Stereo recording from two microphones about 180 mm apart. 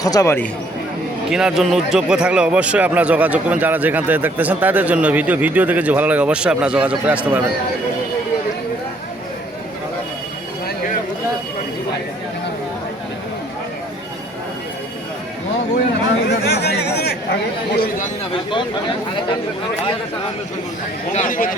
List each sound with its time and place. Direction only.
0.0 s speech: 20° left (ahead or behind)
1.3 s speech: 5° right (ahead or behind)
16.2 s a sound: 70° left (ahead or behind)
17.7 s chatter: 45° left (ahead or behind)
21.1 s speech: 45° left (ahead or behind)